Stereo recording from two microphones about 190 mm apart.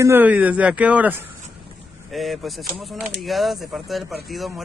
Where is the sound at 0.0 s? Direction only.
10° right (ahead or behind).